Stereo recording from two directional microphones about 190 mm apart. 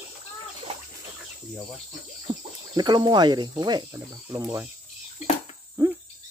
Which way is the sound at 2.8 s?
20° right (ahead or behind).